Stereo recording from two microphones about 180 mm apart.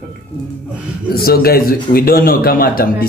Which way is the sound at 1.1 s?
60° left (ahead or behind).